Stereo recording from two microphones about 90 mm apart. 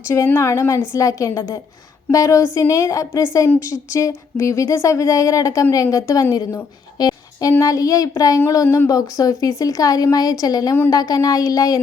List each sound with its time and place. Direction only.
0.3 s speech: 30° left (ahead or behind)
7.0 s a sound: 45° left (ahead or behind)
7.6 s speech: 40° left (ahead or behind)
8.6 s speech: 25° left (ahead or behind)
8.9 s a woman's voice: 40° left (ahead or behind)